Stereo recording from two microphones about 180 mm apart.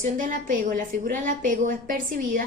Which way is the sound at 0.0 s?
45° right (ahead or behind).